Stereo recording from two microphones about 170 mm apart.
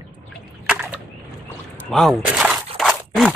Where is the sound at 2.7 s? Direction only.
Centre (ahead or behind).